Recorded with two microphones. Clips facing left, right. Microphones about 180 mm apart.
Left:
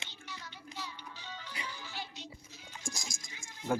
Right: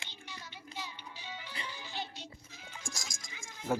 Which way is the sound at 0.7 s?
15° right (ahead or behind).